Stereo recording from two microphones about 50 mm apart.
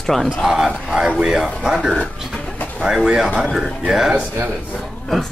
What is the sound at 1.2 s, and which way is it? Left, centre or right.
Speech, centre.